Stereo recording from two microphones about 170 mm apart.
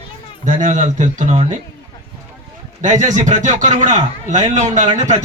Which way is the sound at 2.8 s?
45° right (ahead or behind).